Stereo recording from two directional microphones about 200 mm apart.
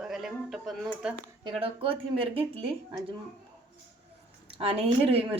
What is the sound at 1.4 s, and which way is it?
Speech, 25° right (ahead or behind).